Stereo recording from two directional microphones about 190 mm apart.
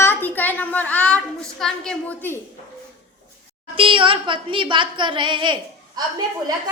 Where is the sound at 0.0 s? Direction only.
10° left (ahead or behind).